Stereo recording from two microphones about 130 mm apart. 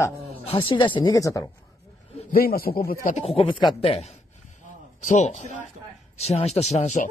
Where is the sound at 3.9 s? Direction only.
55° left (ahead or behind).